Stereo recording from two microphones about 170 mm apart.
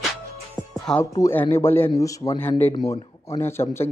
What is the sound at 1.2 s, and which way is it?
A man's voice, 15° left (ahead or behind).